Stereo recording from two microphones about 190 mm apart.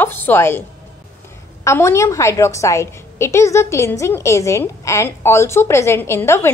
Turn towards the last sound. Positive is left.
turn(degrees=15)  # may be behind; listen again after turning